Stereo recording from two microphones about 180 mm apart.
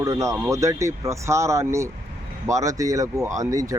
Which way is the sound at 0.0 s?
15° right (ahead or behind).